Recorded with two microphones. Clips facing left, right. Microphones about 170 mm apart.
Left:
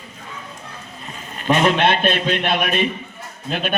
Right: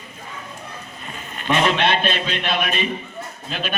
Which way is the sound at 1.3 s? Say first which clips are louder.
Left 3 dB; 40° left (ahead or behind).